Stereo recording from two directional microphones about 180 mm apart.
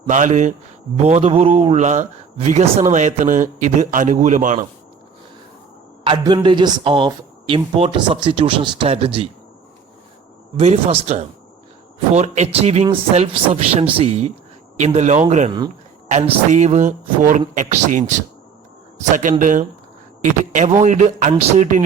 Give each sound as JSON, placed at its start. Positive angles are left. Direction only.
{"t": 0.1, "sound": "a man's voice", "side_deg": -45}
{"t": 6.1, "sound": "a man's voice", "side_deg": -25}
{"t": 10.6, "sound": "a man's voice", "side_deg": -40}